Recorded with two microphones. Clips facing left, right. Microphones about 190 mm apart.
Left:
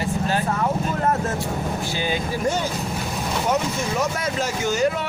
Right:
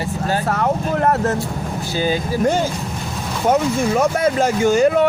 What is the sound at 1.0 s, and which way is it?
Vehicle, 65° right (ahead or behind).